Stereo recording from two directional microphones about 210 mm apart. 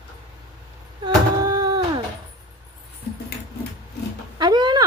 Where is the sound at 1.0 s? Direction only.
20° right (ahead or behind).